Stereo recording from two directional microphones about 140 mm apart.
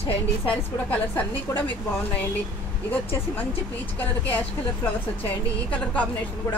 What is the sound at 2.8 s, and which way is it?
A woman's voice, 15° left (ahead or behind).